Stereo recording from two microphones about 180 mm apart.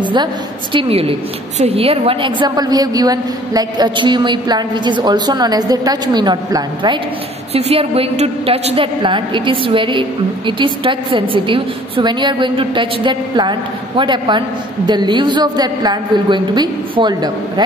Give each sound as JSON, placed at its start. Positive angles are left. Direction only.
{"t": 0.0, "sound": "a woman's voice", "side_deg": -25}